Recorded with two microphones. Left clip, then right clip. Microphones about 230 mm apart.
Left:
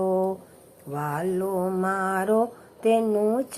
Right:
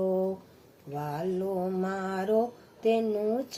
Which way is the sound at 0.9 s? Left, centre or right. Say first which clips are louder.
Left 5 dB; centre.